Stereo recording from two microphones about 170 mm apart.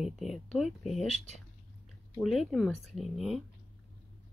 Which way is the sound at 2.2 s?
Centre (ahead or behind).